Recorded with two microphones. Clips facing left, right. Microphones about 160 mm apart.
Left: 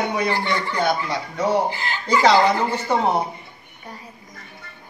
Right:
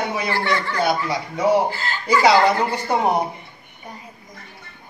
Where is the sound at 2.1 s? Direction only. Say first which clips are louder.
Right 1 dB; 10° right (ahead or behind).